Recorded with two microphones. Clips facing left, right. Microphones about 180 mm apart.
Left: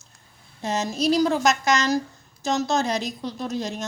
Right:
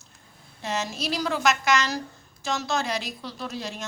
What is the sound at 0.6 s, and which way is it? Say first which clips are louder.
A woman's voice: left 6 dB; 40° left (ahead or behind).